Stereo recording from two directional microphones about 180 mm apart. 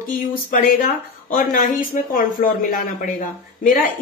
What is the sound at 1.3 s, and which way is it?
Speech, 50° left (ahead or behind).